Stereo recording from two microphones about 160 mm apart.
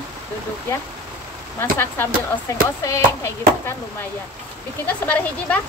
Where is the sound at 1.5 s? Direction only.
15° left (ahead or behind).